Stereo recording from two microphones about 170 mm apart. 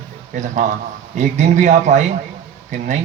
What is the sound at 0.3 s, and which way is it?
A man's voice, 45° right (ahead or behind).